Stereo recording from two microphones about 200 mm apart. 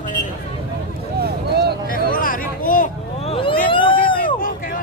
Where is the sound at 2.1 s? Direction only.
45° left (ahead or behind).